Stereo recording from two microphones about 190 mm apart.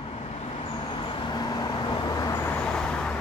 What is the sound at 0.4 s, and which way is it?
Vehicle, 30° left (ahead or behind).